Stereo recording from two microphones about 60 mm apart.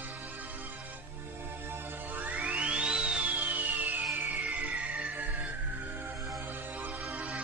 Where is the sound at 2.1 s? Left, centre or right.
Right.